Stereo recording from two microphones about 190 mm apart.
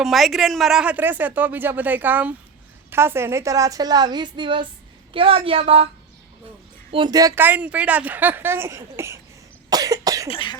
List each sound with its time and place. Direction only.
0.0 s speech: centre (ahead or behind); by 5.9 s 30° right (ahead or behind)
6.9 s speech: 25° right (ahead or behind)
9.6 s cough: 20° right (ahead or behind)
10.2 s cough: 25° left (ahead or behind)